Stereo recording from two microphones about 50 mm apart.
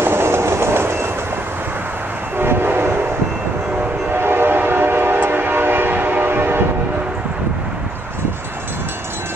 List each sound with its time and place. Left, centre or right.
0.0 s train: right
2.3 s train: right
4.1 s train: right